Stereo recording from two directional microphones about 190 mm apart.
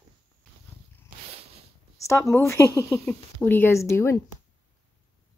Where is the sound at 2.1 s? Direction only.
15° left (ahead or behind).